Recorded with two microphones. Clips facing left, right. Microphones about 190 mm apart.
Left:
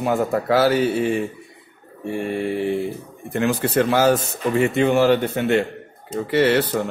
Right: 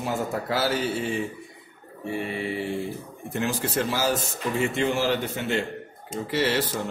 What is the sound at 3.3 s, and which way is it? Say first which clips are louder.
Speech: left 7 dB; 60° left (ahead or behind).